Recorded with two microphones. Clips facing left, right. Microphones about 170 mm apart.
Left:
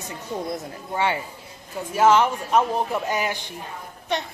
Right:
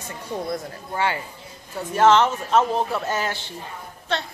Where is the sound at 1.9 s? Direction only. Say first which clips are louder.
Right 1 dB; 10° left (ahead or behind).